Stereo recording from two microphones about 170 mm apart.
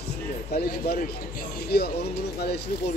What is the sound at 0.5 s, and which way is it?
Speech, 65° left (ahead or behind).